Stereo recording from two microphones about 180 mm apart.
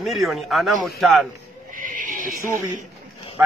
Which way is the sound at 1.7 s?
50° right (ahead or behind).